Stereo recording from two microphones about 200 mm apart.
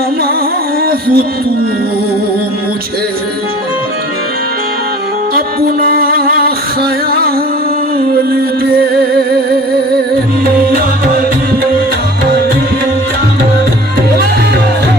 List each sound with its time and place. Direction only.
0.8 s music: 50° right (ahead or behind)
5.3 s music: 50° right (ahead or behind)